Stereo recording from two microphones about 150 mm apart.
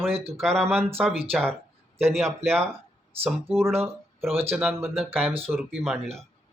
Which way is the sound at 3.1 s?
40° right (ahead or behind).